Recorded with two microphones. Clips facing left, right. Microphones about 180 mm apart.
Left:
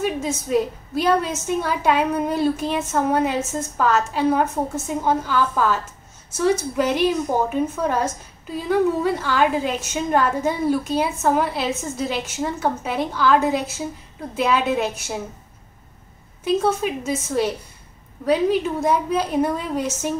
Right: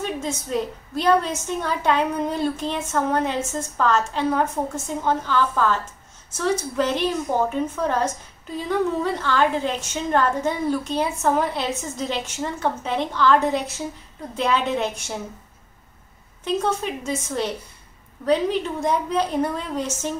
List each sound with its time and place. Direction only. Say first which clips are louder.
0.0 s a woman's voice: left 4 dB; 10° left (ahead or behind)
6.8 s a woman's voice: left 3 dB; 10° left (ahead or behind)
16.4 s a woman's voice: left 3 dB; 5° left (ahead or behind)